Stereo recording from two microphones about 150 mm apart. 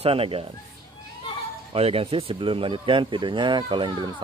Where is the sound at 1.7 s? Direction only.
40° right (ahead or behind).